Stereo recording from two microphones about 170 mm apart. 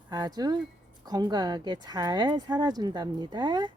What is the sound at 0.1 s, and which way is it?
Speech, 25° right (ahead or behind).